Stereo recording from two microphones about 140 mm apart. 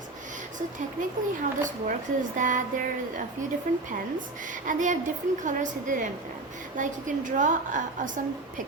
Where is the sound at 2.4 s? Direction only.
65° right (ahead or behind).